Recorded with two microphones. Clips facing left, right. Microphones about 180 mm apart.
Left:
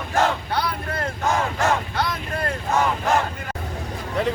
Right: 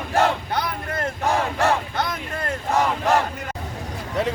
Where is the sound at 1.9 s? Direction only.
20° right (ahead or behind).